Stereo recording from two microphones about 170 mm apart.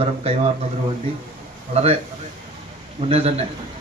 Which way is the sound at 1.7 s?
40° right (ahead or behind).